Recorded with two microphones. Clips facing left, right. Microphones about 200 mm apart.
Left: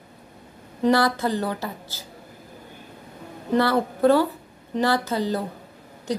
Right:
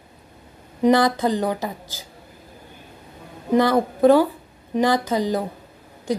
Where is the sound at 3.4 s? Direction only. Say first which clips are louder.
Right 3 dB; 15° right (ahead or behind).